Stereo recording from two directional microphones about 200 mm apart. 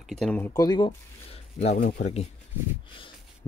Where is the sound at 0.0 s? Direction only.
Centre (ahead or behind).